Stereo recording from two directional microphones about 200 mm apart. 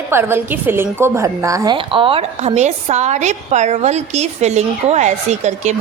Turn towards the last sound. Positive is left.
turn(degrees=-35)  # may be behind; listen again after turning